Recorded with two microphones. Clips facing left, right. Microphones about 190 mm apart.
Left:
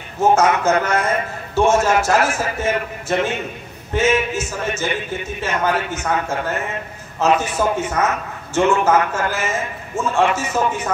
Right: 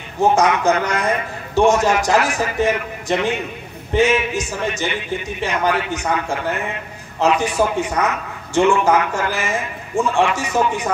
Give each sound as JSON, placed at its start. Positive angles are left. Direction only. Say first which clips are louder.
{"t": 0.2, "sound": "a man's voice", "louder": "even", "side_deg": -15}